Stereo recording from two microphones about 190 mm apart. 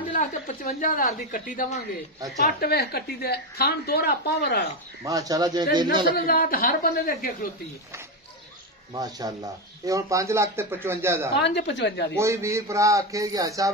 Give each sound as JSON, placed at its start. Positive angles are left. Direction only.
{"t": 0.1, "sound": "a woman's voice", "side_deg": 40}
{"t": 5.0, "sound": "a man's voice", "side_deg": -20}
{"t": 6.1, "sound": "speech", "side_deg": 50}
{"t": 8.9, "sound": "speech", "side_deg": -20}
{"t": 11.3, "sound": "a woman's voice", "side_deg": 65}
{"t": 12.2, "sound": "speech", "side_deg": -15}